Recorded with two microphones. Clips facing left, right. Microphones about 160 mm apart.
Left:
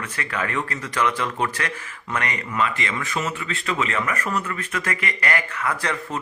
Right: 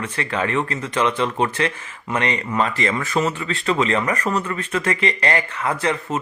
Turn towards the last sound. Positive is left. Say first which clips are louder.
# right 5 dB
turn(degrees=-25)  # may be behind; listen again after turning